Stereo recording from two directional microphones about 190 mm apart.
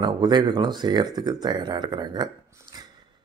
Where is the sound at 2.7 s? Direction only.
25° right (ahead or behind).